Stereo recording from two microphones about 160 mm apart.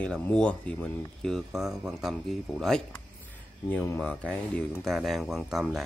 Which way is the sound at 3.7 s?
15° left (ahead or behind).